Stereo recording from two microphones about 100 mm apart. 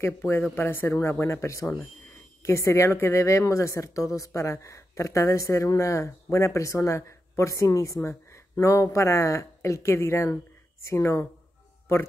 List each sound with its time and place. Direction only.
0.0 s a woman's voice: 25° left (ahead or behind)